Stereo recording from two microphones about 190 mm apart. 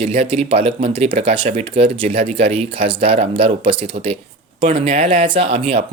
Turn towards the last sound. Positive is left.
turn(degrees=-35)  # may be behind; listen again after turning